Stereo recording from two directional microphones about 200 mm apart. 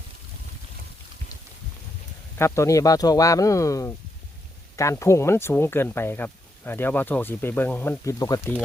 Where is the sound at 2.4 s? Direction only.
15° left (ahead or behind).